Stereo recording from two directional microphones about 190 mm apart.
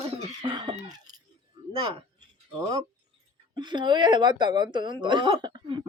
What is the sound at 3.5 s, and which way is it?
Speech, 25° right (ahead or behind).